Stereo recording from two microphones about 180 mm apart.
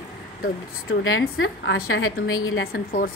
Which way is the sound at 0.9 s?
80° left.